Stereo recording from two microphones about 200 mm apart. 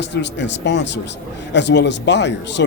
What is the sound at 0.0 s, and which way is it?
A man's voice, 60° left (ahead or behind).